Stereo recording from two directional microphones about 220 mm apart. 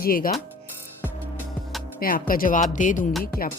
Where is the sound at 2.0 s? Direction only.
40° left (ahead or behind).